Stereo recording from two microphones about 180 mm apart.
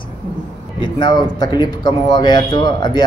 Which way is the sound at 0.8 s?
25° left (ahead or behind).